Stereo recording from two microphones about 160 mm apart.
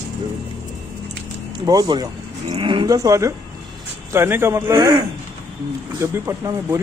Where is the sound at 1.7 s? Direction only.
25° right (ahead or behind).